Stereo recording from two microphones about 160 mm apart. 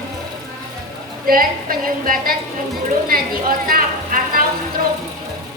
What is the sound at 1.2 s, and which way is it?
A woman's voice, 65° right (ahead or behind).